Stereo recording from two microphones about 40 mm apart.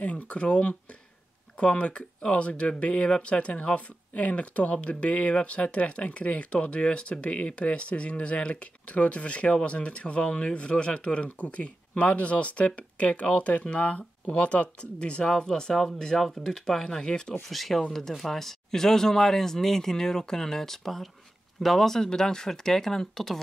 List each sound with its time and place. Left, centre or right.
0.0 s speech: left
17.3 s speech: centre